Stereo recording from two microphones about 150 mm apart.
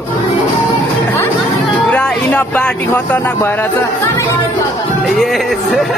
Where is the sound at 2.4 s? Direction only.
10° left (ahead or behind).